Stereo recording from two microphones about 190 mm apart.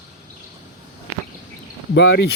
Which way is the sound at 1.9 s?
70° left (ahead or behind).